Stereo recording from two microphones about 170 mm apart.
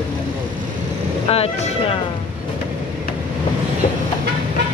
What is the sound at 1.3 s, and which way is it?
Speech, 35° left (ahead or behind).